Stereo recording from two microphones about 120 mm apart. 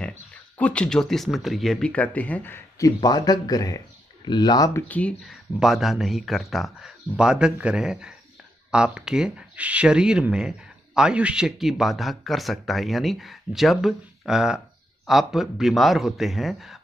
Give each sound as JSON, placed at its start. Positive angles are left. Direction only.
{"t": 0.0, "sound": "speech", "side_deg": 10}
{"t": 3.0, "sound": "speech", "side_deg": 35}
{"t": 4.8, "sound": "speech", "side_deg": 10}
{"t": 5.2, "sound": "speech", "side_deg": 0}